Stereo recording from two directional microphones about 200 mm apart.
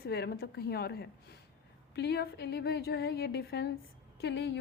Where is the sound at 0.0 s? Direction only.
50° left (ahead or behind).